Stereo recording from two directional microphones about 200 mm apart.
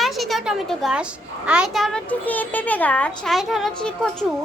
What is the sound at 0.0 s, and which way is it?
A woman's voice, centre (ahead or behind).